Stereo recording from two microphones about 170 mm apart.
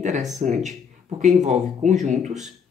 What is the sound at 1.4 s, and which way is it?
Speech, 45° right (ahead or behind).